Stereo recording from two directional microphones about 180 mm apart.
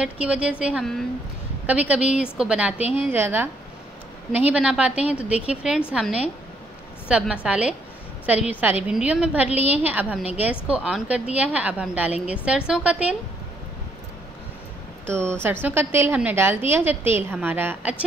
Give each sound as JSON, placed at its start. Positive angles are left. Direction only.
{"t": 0.0, "sound": "a woman's voice", "side_deg": -5}
{"t": 15.4, "sound": "a woman's voice", "side_deg": -10}